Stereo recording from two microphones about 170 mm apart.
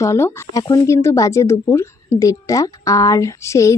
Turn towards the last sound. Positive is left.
turn(degrees=20)  # may be behind; listen again after turning